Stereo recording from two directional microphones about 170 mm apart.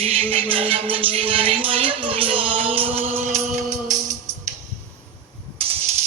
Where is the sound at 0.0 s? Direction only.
35° right (ahead or behind).